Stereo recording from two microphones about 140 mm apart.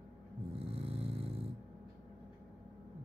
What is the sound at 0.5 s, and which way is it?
Vehicle, 45° right (ahead or behind).